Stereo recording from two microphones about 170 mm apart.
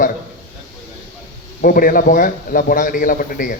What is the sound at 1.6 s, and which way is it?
A man's voice, 55° left (ahead or behind).